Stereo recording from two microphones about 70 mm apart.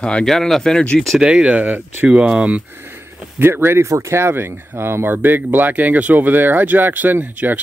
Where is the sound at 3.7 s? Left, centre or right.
Right.